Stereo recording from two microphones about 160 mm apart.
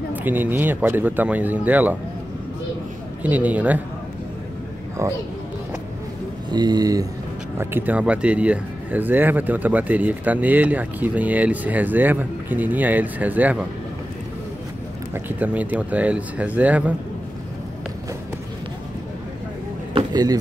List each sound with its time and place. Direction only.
0.1 s speech: 10° right (ahead or behind)
3.2 s speech: 10° right (ahead or behind)
6.5 s speech: 25° right (ahead or behind)
7.5 s speech: 10° right (ahead or behind)
15.2 s speech: 10° right (ahead or behind)
19.9 s a sound: 30° right (ahead or behind)